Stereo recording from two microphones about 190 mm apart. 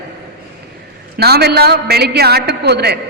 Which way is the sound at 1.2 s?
55° right (ahead or behind).